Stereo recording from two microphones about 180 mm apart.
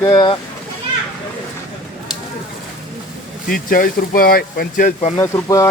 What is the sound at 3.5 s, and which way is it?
Speech, 50° left (ahead or behind).